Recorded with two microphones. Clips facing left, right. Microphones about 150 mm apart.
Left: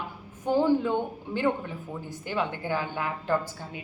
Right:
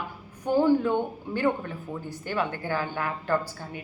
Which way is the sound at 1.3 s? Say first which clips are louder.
Right 1 dB; 15° left (ahead or behind).